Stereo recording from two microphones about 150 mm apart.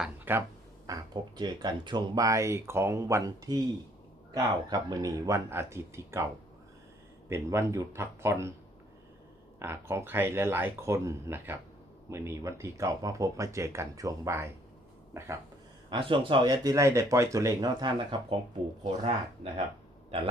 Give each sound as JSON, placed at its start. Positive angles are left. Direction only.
{"t": 0.3, "sound": "speech", "side_deg": -10}
{"t": 0.9, "sound": "speech", "side_deg": -25}
{"t": 4.7, "sound": "speech", "side_deg": -25}
{"t": 7.3, "sound": "speech", "side_deg": -20}
{"t": 9.6, "sound": "speech", "side_deg": -15}
{"t": 15.9, "sound": "speech", "side_deg": -35}